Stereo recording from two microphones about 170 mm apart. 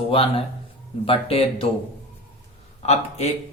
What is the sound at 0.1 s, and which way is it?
Speech, 35° left (ahead or behind).